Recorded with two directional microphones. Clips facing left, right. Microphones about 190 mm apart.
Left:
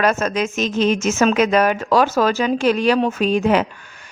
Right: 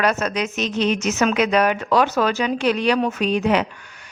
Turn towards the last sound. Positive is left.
turn(degrees=45)  # may be behind; listen again after turning